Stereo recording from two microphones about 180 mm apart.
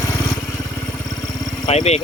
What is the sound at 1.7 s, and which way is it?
Speech, 35° left (ahead or behind).